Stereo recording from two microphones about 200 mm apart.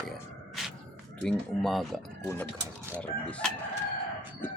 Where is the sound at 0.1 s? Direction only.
Centre (ahead or behind).